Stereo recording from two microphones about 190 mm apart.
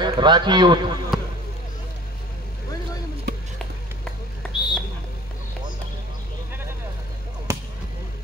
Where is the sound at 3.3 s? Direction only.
60° right (ahead or behind).